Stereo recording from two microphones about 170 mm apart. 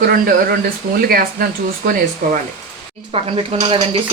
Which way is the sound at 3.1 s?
35° right (ahead or behind).